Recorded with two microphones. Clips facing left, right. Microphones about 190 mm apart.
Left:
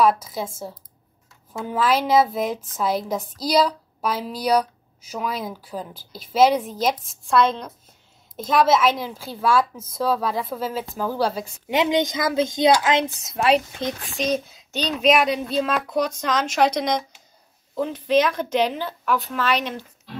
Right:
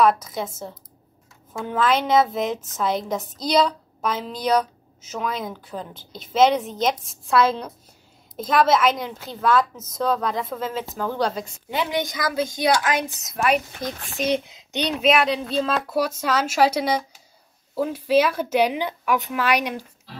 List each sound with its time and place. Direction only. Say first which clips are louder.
0.0 s a woman's voice: even; 5° left (ahead or behind)
1.6 s a woman's voice: even; 5° left (ahead or behind)
7.2 s a woman's voice: even; 5° right (ahead or behind); by 13.9 s 25° left (ahead or behind)
14.5 s child singing: right 1 dB; 15° right (ahead or behind)
15.0 s a woman's voice: left 1 dB; centre (ahead or behind)